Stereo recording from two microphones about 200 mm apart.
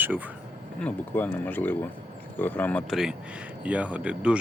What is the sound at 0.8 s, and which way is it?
Speech, 10° left (ahead or behind).